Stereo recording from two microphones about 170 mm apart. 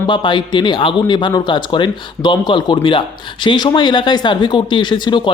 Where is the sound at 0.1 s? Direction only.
25° left (ahead or behind).